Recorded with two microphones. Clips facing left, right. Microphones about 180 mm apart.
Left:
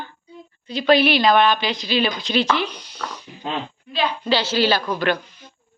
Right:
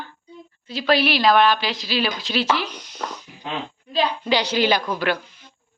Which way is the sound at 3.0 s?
25° right (ahead or behind).